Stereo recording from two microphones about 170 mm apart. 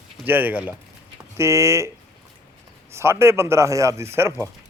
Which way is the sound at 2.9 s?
15° right (ahead or behind).